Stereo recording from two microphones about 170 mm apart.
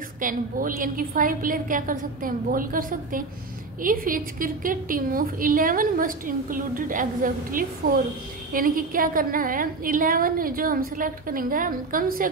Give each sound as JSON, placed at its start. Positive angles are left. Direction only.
{"t": 0.2, "sound": "a woman's voice", "side_deg": -55}